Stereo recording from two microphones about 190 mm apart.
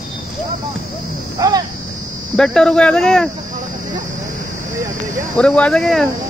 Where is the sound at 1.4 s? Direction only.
20° right (ahead or behind).